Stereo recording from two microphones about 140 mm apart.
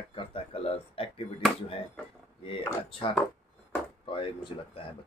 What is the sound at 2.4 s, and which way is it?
Speech, 40° left (ahead or behind).